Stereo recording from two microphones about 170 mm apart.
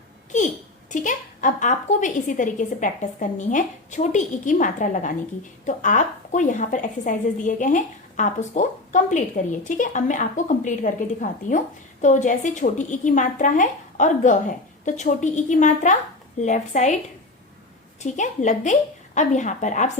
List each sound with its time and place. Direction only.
0.3 s a woman's voice: 45° left (ahead or behind)
18.0 s a woman's voice: 45° left (ahead or behind)